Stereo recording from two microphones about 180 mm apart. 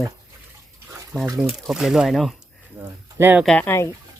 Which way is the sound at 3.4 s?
5° left (ahead or behind).